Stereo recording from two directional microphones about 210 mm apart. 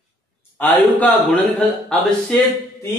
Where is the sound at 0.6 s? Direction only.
10° left (ahead or behind).